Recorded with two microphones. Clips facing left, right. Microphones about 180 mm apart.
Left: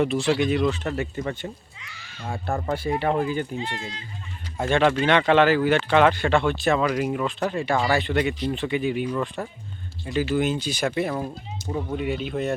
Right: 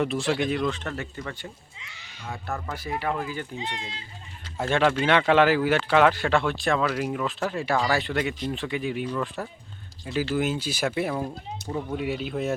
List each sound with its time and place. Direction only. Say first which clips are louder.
0.0 s speech: left 3 dB; centre (ahead or behind); by 1.5 s 25° left (ahead or behind)
1.8 s a sound: left 3 dB; 25° right (ahead or behind)
2.2 s speech: left 6 dB; 35° left (ahead or behind)
3.6 s speech: left 3 dB; 20° right (ahead or behind)
4.9 s speech: left 1 dB; 5° right (ahead or behind)